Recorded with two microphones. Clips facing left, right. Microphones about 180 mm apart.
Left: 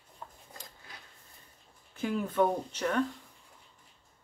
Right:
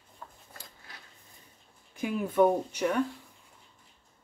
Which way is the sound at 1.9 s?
10° right (ahead or behind).